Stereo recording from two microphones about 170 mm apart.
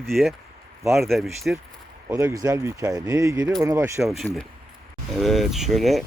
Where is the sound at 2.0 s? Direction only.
20° right (ahead or behind).